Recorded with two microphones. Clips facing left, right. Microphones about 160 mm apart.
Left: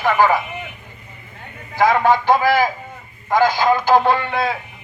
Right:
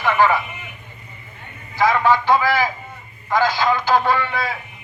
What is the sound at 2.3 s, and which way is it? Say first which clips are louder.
Speech: left 2 dB; 50° left (ahead or behind).